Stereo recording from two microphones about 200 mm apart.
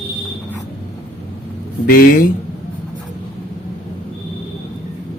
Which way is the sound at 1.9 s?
45° left (ahead or behind).